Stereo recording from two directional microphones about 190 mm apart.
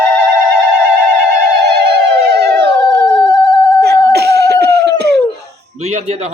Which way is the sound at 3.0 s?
10° left (ahead or behind).